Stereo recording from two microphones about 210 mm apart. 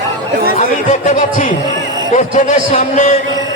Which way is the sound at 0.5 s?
35° left (ahead or behind).